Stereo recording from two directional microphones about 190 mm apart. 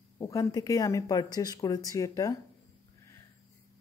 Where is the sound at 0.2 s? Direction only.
20° left (ahead or behind).